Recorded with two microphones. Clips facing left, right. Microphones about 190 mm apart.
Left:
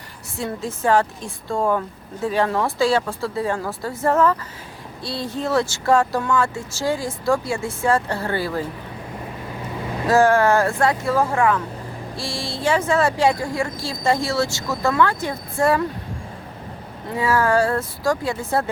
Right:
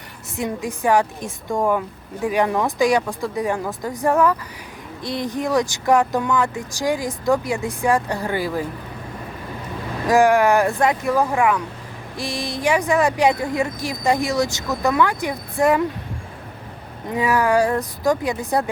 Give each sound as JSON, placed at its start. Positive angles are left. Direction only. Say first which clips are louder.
{"t": 0.3, "sound": "speech", "louder": "right 2 dB", "side_deg": -15}
{"t": 10.1, "sound": "speech", "louder": "right 1 dB", "side_deg": -15}
{"t": 17.1, "sound": "speech", "louder": "right 1 dB", "side_deg": -15}